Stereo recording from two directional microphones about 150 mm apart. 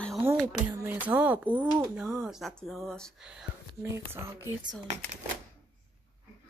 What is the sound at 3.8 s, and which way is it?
Speech, 15° right (ahead or behind).